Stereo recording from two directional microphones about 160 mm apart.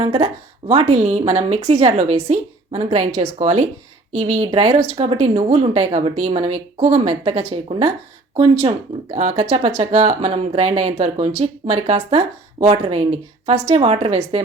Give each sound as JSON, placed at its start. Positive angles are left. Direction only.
{"t": 0.0, "sound": "a woman's voice", "side_deg": -40}